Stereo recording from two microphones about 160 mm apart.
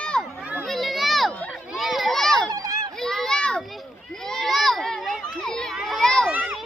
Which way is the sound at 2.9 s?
Centre (ahead or behind).